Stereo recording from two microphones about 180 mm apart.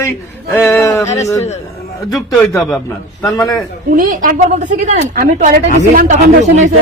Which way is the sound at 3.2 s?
20° left (ahead or behind).